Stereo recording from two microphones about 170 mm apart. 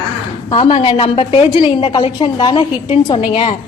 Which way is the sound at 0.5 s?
30° left (ahead or behind).